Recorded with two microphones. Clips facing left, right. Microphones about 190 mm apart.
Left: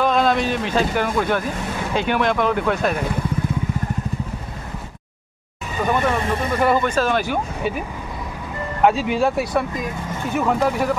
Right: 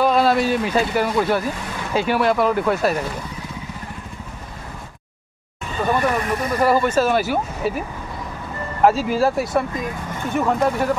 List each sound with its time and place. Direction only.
0.0 s speech: 5° right (ahead or behind)
5.9 s speech: 25° left (ahead or behind)
6.6 s speech: 5° right (ahead or behind)
8.8 s speech: centre (ahead or behind)